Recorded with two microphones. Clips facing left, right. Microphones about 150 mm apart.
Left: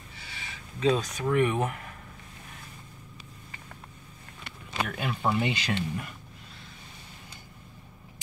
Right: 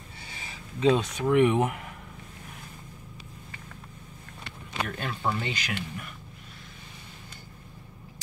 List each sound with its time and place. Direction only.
0.7 s speech: 25° right (ahead or behind)
4.8 s speech: 5° left (ahead or behind); by 6.0 s 30° left (ahead or behind)